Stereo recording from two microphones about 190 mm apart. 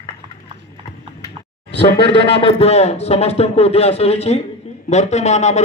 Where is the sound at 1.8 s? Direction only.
30° left (ahead or behind).